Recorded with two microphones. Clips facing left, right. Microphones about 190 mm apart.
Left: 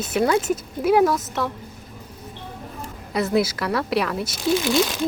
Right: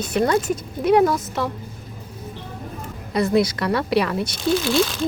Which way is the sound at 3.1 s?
Centre (ahead or behind).